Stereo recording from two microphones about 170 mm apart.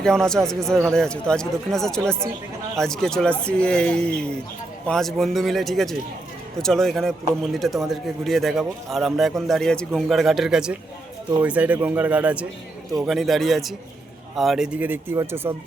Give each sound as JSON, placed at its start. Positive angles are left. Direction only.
{"t": 0.0, "sound": "speech", "side_deg": 5}